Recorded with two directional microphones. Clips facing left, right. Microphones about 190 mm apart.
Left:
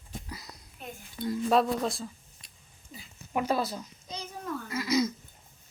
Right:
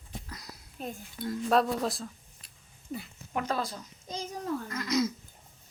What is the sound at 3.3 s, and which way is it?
Speech, 10° left (ahead or behind).